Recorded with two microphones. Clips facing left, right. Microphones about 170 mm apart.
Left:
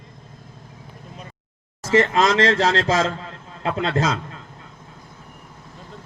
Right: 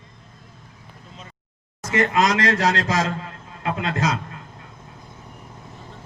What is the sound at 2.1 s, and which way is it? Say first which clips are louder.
A man's voice: left 2 dB; 30° left (ahead or behind).